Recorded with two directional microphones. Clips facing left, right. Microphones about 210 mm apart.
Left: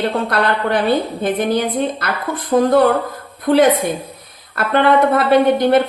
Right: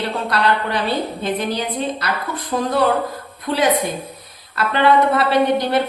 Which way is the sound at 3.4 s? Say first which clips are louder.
Left 6 dB; 55° left (ahead or behind).